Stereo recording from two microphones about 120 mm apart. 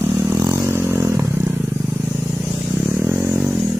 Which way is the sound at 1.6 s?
10° right (ahead or behind).